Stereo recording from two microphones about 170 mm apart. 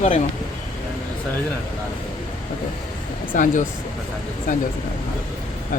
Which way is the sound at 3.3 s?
50° left (ahead or behind).